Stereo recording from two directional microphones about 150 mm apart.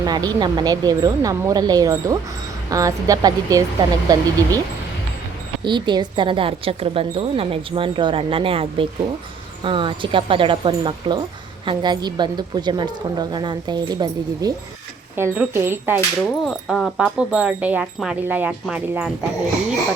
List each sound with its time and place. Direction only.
0.0 s speech: 25° right (ahead or behind)
5.6 s speech: 30° right (ahead or behind)
15.1 s speech: 15° right (ahead or behind)
16.2 s speech: centre (ahead or behind)